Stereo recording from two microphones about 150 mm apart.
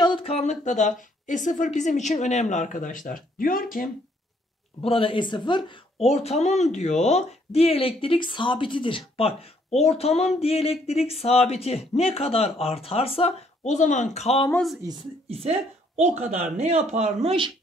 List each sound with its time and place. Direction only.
0.0 s speech: 35° left (ahead or behind); by 3.9 s 70° left (ahead or behind)
4.8 s speech: 35° left (ahead or behind)
13.7 s speech: 55° left (ahead or behind)
15.2 s a woman's voice: 40° right (ahead or behind)